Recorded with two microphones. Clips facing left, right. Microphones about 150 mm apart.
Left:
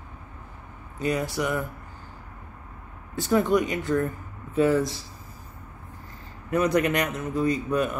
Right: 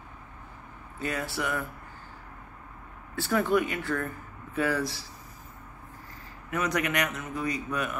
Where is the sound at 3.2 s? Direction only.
20° left (ahead or behind).